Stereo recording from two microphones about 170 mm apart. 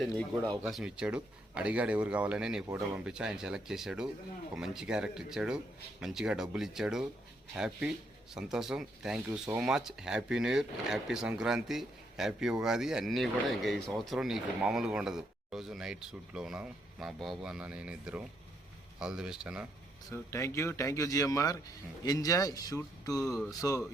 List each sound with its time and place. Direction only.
0.0 s speech: 5° left (ahead or behind)
0.6 s speech: 5° right (ahead or behind)
2.6 s speech: 20° right (ahead or behind)
3.0 s speech: 5° right (ahead or behind)
20.1 s speech: 15° left (ahead or behind)
23.2 s speech: 5° left (ahead or behind)